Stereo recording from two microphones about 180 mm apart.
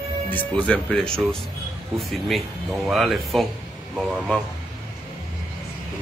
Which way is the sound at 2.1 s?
Centre (ahead or behind).